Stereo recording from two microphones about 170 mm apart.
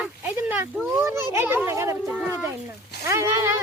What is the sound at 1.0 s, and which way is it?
Children playing, 15° right (ahead or behind).